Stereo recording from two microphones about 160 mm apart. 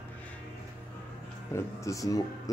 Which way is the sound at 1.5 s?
20° left (ahead or behind).